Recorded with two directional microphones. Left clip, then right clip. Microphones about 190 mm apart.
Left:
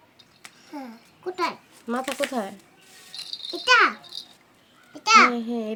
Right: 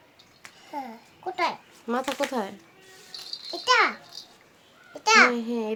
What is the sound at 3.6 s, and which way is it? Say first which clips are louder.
A child's voice: left 3 dB; centre (ahead or behind).